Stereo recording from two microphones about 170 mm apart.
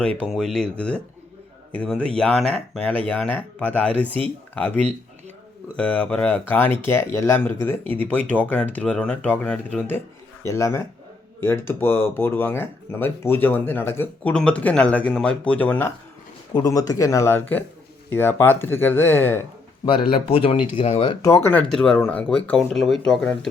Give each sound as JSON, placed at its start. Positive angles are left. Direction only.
{"t": 0.2, "sound": "speech", "side_deg": 5}
{"t": 5.7, "sound": "speech", "side_deg": 10}
{"t": 16.6, "sound": "speech", "side_deg": 20}
{"t": 19.8, "sound": "speech", "side_deg": 30}
{"t": 21.2, "sound": "speech", "side_deg": 15}